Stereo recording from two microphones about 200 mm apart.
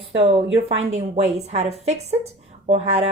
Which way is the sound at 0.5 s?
30° right (ahead or behind).